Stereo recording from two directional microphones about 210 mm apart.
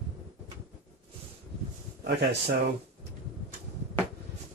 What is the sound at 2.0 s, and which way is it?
Speech, 50° right (ahead or behind).